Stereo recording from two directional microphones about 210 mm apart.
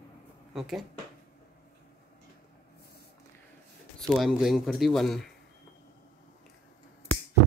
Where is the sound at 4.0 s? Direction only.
Centre (ahead or behind).